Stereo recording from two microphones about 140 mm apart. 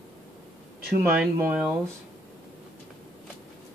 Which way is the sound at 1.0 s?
10° right (ahead or behind).